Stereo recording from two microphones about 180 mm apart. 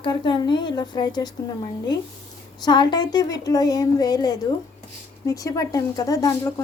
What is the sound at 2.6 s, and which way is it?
A woman's voice, 25° left (ahead or behind).